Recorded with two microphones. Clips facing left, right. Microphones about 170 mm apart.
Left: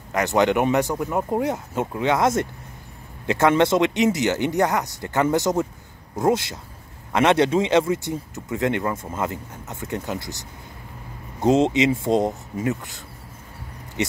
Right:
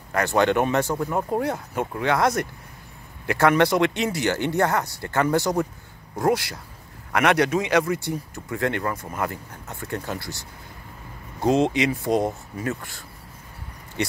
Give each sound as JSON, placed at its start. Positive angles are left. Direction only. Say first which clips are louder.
{"t": 0.1, "sound": "speech", "louder": "left 1 dB", "side_deg": 20}
{"t": 11.4, "sound": "speech", "louder": "left 2 dB", "side_deg": 20}